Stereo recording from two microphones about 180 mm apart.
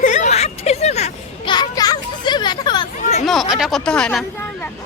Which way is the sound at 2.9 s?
40° left (ahead or behind).